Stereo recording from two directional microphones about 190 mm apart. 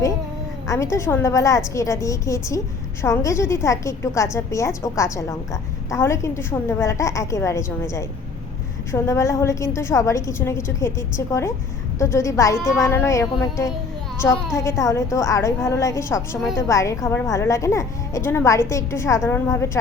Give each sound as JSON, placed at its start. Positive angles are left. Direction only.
{"t": 0.7, "sound": "a woman's voice", "side_deg": 15}